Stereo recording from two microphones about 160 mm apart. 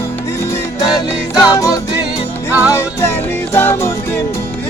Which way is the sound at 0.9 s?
25° left (ahead or behind).